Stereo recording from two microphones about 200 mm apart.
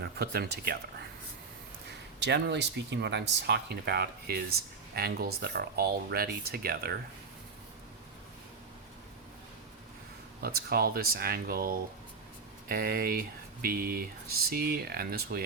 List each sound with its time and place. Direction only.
0.0 s speech: 55° right (ahead or behind)
2.1 s speech: 60° right (ahead or behind)
10.4 s speech: 50° right (ahead or behind)